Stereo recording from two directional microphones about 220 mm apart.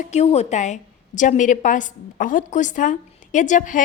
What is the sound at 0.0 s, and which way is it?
Speech, 30° left (ahead or behind).